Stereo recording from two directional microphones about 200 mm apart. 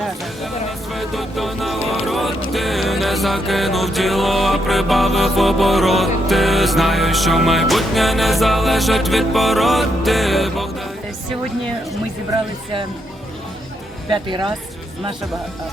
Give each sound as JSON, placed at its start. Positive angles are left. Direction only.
{"t": 0.9, "sound": "music", "side_deg": 0}
{"t": 14.1, "sound": "speech", "side_deg": -25}